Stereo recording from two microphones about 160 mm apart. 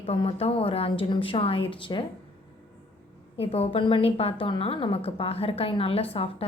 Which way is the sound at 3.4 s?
40° left (ahead or behind).